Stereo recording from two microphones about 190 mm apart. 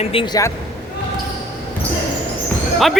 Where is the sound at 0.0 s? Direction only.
30° left (ahead or behind).